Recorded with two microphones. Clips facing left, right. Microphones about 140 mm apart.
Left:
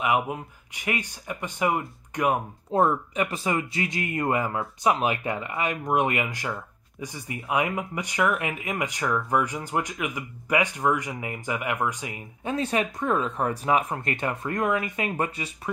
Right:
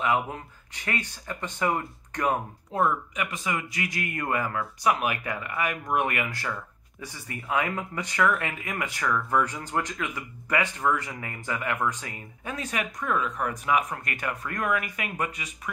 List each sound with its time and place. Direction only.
0.0 s speech: 15° left (ahead or behind)
2.7 s a man's voice: 25° left (ahead or behind)
12.4 s a man's voice: 30° left (ahead or behind)